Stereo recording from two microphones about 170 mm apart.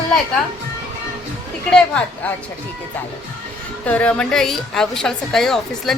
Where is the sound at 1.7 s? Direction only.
5° left (ahead or behind).